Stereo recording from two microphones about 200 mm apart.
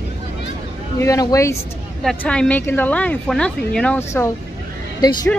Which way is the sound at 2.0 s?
5° left (ahead or behind).